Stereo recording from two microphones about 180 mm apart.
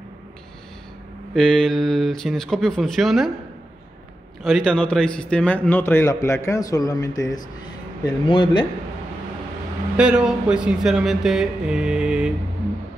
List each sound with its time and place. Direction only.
1.3 s speech: centre (ahead or behind)
4.4 s a man's voice: centre (ahead or behind); by 8.6 s 25° left (ahead or behind)
9.9 s speech: 5° right (ahead or behind)